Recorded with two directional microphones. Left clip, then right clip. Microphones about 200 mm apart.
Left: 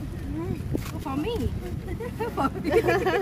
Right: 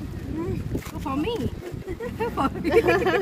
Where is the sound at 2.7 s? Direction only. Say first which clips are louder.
Right 3 dB; 45° right (ahead or behind).